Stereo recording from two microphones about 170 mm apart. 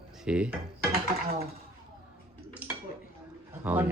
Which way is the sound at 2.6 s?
10° right (ahead or behind).